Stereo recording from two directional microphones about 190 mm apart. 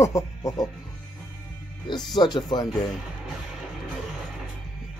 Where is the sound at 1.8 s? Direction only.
20° left (ahead or behind).